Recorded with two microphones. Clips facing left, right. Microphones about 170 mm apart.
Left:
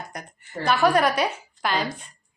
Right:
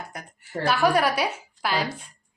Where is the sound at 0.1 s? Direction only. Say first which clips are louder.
Right 1 dB; 5° right (ahead or behind).